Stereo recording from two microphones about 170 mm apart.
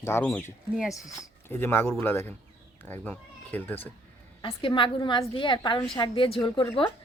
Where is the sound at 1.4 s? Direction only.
15° left (ahead or behind).